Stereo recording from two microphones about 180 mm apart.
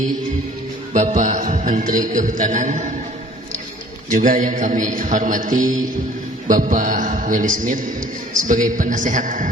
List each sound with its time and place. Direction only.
0.9 s music: 45° right (ahead or behind)
4.1 s music: 45° right (ahead or behind)